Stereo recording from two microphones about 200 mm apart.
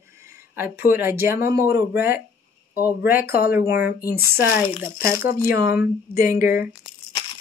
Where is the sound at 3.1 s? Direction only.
45° left (ahead or behind).